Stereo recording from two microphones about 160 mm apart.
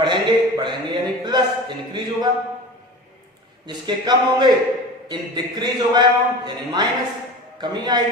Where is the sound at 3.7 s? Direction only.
25° right (ahead or behind).